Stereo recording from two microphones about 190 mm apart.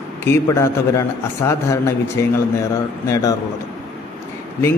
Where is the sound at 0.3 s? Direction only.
15° left (ahead or behind).